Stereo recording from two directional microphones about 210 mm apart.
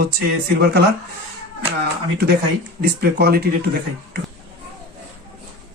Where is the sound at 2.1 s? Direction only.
50° right (ahead or behind).